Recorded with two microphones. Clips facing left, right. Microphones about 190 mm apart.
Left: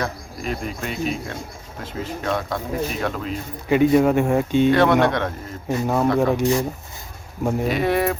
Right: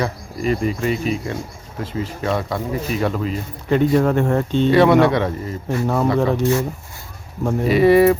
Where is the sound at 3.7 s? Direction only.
10° left (ahead or behind).